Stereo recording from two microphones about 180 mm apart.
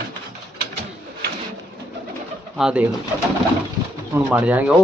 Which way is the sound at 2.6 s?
5° right (ahead or behind).